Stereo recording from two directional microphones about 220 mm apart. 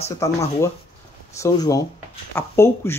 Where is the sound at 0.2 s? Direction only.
15° left (ahead or behind).